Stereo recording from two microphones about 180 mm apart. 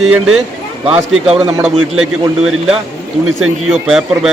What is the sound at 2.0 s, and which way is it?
A man's voice, 5° right (ahead or behind).